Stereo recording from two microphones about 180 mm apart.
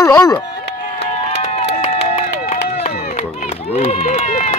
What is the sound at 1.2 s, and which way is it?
Run, 35° left (ahead or behind).